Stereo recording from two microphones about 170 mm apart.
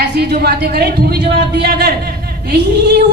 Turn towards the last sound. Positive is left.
turn(degrees=-75)  # may be behind; listen again after turning